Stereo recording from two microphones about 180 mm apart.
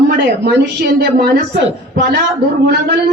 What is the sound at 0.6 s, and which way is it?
A woman's voice, 60° right (ahead or behind).